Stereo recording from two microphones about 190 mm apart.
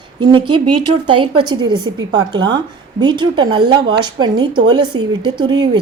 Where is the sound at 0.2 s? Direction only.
25° right (ahead or behind).